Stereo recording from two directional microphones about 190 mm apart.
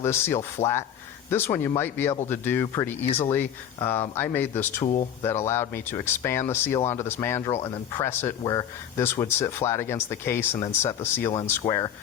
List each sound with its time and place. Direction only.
0.0 s speech: 15° left (ahead or behind)